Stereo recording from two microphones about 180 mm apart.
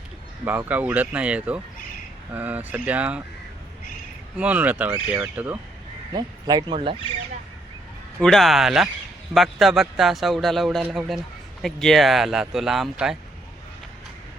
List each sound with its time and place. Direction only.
0.4 s speech: 10° right (ahead or behind)
4.4 s speech: 10° right (ahead or behind)
6.1 s speech: 25° right (ahead or behind)
8.2 s speech: centre (ahead or behind)